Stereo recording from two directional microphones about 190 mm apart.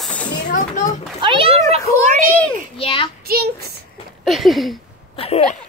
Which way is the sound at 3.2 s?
55° right (ahead or behind).